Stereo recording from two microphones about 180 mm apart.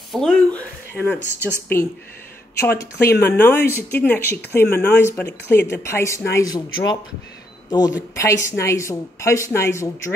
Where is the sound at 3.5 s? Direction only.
60° left (ahead or behind).